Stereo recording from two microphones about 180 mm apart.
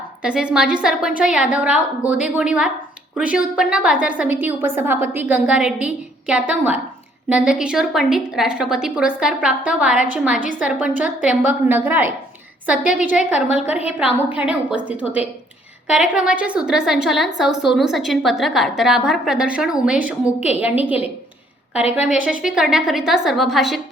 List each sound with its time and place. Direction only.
0.2 s a woman's voice: 5° right (ahead or behind)
21.8 s a woman's voice: 40° left (ahead or behind)
22.1 s a woman's voice: 5° right (ahead or behind)